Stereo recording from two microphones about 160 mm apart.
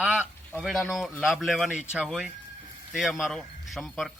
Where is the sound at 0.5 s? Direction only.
Centre (ahead or behind).